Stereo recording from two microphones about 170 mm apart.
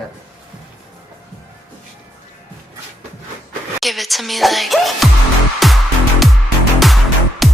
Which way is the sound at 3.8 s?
Centre (ahead or behind).